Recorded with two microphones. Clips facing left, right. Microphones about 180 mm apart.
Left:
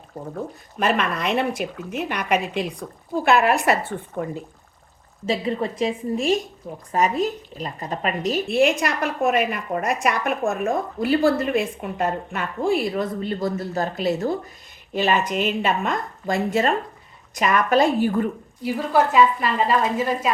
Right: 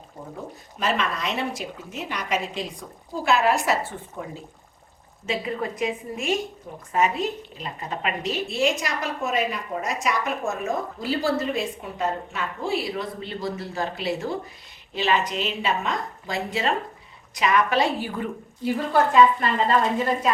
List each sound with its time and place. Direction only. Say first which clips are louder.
0.8 s a woman's voice: left 4 dB; 55° left (ahead or behind)
5.2 s a woman's voice: left 4 dB; 30° left (ahead or behind)
8.4 s a woman's voice: left 6 dB; 60° left (ahead or behind)
19.1 s speech: even; 5° left (ahead or behind)